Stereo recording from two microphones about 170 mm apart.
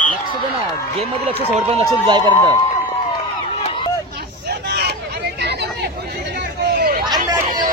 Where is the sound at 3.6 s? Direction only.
30° left (ahead or behind).